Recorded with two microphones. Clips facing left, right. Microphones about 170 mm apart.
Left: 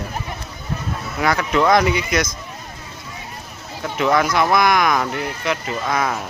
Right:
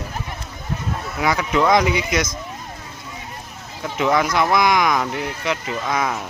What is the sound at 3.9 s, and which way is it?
Speech, 15° right (ahead or behind).